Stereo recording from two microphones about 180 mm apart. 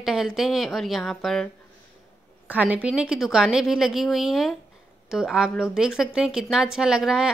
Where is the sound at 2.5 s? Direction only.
10° right (ahead or behind).